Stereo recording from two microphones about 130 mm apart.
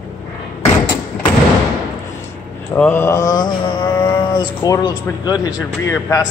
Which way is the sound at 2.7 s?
15° left (ahead or behind).